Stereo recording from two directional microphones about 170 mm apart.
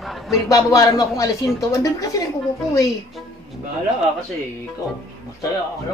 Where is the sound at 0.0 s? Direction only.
Centre (ahead or behind).